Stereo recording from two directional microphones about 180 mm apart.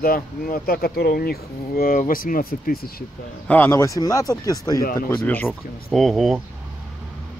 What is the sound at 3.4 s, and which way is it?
Speech, 10° left (ahead or behind).